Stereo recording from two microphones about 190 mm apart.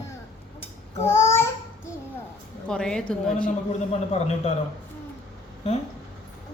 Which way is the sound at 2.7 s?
5° left (ahead or behind).